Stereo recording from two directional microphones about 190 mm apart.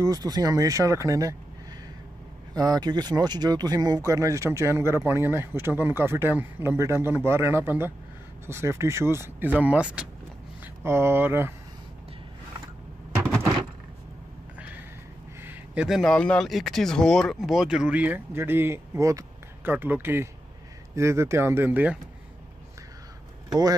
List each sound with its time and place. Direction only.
0.0 s speech: 20° right (ahead or behind)
2.5 s speech: 20° right (ahead or behind)
15.4 s speech: 5° right (ahead or behind)